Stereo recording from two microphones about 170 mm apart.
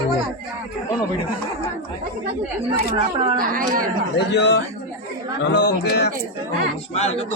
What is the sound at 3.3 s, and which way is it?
Speech, 55° right (ahead or behind).